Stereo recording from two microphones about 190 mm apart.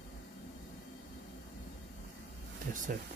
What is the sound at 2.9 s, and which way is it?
Speech, 45° right (ahead or behind).